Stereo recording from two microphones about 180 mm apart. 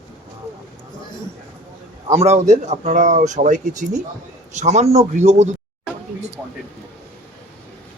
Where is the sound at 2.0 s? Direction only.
40° right (ahead or behind).